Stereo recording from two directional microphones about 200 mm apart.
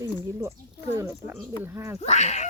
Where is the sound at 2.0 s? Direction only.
35° left (ahead or behind).